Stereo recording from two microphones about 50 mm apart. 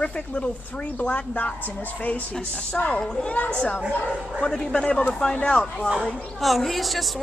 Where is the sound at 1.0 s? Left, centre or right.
Left.